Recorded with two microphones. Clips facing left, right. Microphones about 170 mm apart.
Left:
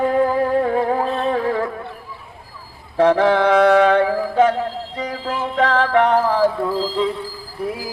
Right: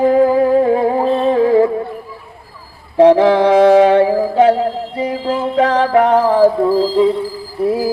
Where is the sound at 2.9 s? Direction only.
30° right (ahead or behind).